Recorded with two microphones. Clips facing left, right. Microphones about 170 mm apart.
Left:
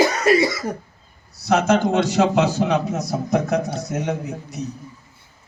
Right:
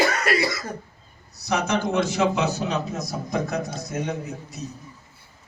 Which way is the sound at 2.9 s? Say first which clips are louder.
Left 6 dB; 55° left (ahead or behind).